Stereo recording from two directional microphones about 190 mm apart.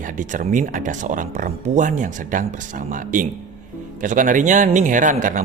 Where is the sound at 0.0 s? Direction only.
45° right (ahead or behind).